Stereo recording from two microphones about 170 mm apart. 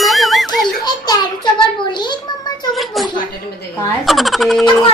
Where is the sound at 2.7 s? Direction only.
Centre (ahead or behind).